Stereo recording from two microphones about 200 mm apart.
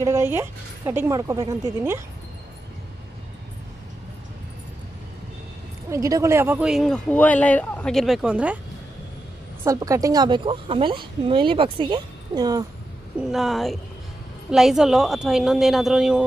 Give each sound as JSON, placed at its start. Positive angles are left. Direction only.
{"t": 0.0, "sound": "speech", "side_deg": -15}
{"t": 5.9, "sound": "speech", "side_deg": -15}
{"t": 9.6, "sound": "a woman's voice", "side_deg": -15}
{"t": 13.2, "sound": "speech", "side_deg": 0}